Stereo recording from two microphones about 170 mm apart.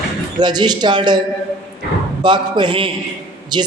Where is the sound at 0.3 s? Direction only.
25° right (ahead or behind).